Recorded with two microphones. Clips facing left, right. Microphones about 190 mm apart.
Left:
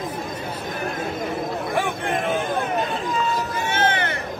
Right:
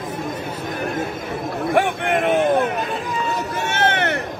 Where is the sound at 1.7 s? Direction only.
65° right (ahead or behind).